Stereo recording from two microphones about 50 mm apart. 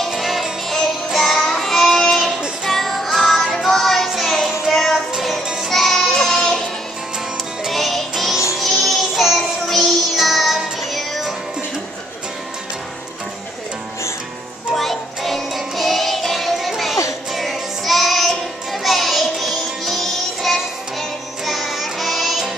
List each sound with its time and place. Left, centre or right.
0.2 s music: centre
0.7 s child singing: centre
2.6 s music: centre
4.1 s child singing: centre
4.7 s music: centre
5.7 s child singing: centre
7.6 s music: centre
14.7 s music: centre
17.3 s child singing: centre